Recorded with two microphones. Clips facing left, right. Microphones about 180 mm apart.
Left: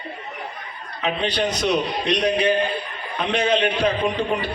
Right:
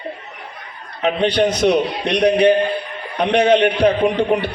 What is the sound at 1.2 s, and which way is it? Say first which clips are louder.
A man's voice: right 8 dB; 60° right (ahead or behind).